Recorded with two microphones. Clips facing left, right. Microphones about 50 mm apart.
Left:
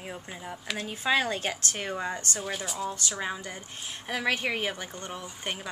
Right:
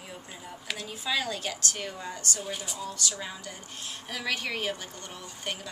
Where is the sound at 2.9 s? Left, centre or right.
Left.